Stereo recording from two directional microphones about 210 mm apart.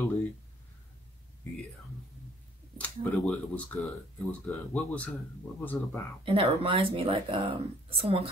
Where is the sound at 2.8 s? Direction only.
5° left (ahead or behind).